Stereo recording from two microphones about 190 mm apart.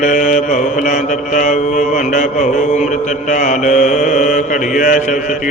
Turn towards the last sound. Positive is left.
turn(degrees=40)  # may be behind; listen again after turning